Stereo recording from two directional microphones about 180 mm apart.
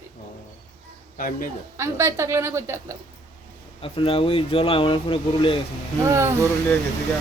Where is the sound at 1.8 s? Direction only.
15° right (ahead or behind).